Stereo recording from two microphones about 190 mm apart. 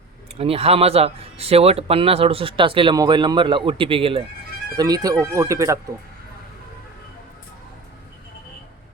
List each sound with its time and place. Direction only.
0.3 s speech: 30° right (ahead or behind)